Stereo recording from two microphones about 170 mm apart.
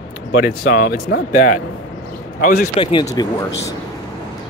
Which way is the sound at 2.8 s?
25° left (ahead or behind).